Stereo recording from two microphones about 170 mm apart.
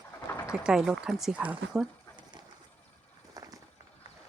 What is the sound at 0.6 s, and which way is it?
Speech, 5° right (ahead or behind).